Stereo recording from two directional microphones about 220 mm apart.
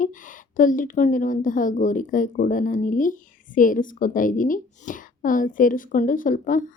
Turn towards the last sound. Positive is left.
turn(degrees=35)  # may be behind; listen again after turning